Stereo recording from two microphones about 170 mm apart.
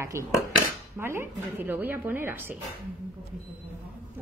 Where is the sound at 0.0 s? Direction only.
15° right (ahead or behind).